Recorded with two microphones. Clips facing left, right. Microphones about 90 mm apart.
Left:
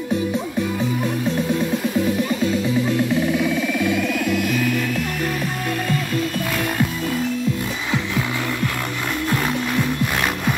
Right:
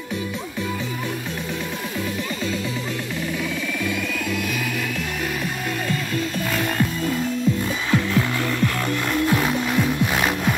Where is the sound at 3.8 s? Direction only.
5° left (ahead or behind).